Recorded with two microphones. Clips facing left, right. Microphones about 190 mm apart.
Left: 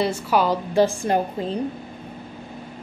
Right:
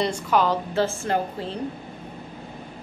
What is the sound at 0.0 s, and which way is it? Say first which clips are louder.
A woman's voice: left 1 dB; 10° left (ahead or behind).